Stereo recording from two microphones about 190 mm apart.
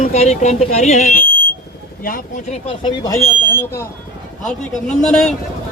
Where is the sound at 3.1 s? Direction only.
10° left (ahead or behind).